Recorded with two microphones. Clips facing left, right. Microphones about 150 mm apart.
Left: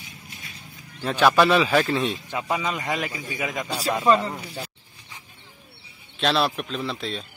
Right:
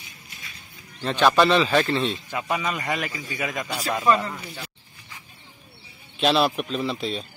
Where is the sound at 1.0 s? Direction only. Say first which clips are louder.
Even; 10° left (ahead or behind).